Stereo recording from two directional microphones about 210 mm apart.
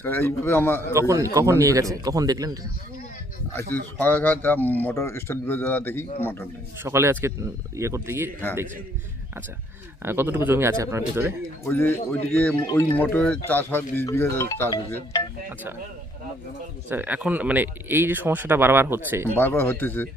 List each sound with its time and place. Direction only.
0.0 s speech: 10° left (ahead or behind)
0.9 s speech: 15° right (ahead or behind)
3.5 s speech: 10° left (ahead or behind)
6.8 s speech: 10° right (ahead or behind)
10.0 s speech: 10° right (ahead or behind)
11.6 s speech: 10° left (ahead or behind)
16.9 s speech: 10° right (ahead or behind)
19.3 s speech: 10° left (ahead or behind)